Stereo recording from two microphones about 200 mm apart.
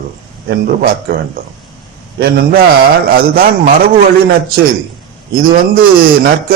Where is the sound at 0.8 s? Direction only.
50° right (ahead or behind).